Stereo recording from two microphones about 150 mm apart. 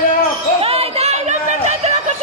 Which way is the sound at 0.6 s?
40° right (ahead or behind).